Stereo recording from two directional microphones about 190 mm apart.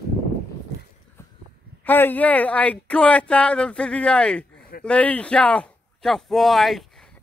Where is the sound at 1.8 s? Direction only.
10° left (ahead or behind).